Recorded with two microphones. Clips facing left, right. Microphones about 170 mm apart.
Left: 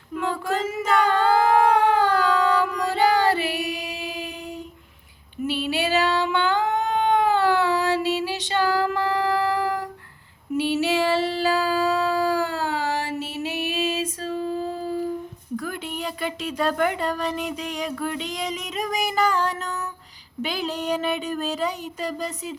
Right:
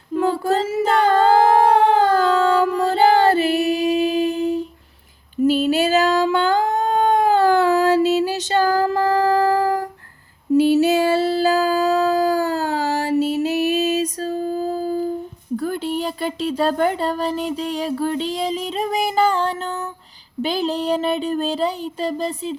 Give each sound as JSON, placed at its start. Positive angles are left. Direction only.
{"t": 0.1, "sound": "female singing", "side_deg": -35}
{"t": 5.5, "sound": "singing", "side_deg": -45}
{"t": 10.5, "sound": "a sound", "side_deg": -40}